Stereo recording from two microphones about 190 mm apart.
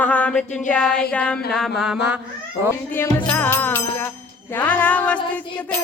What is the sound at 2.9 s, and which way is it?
Mantra, 10° left (ahead or behind).